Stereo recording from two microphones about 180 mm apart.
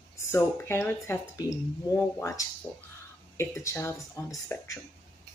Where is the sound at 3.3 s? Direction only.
15° left (ahead or behind).